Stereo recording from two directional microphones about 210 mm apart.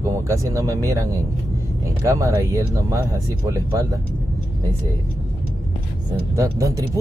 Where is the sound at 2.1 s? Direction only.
15° right (ahead or behind).